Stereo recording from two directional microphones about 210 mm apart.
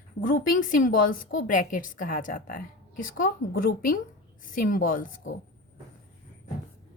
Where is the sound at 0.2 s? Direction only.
40° left (ahead or behind).